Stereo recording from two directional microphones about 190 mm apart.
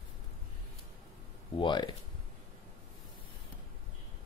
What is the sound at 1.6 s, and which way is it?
Speech, 25° left (ahead or behind).